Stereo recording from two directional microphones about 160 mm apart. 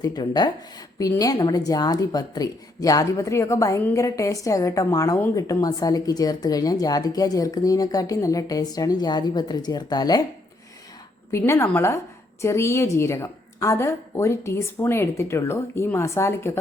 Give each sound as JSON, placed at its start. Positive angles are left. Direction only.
{"t": 0.0, "sound": "a woman's voice", "side_deg": 25}
{"t": 11.3, "sound": "a woman's voice", "side_deg": 15}